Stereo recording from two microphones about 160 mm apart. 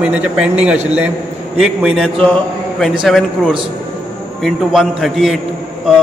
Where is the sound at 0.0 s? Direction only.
5° right (ahead or behind).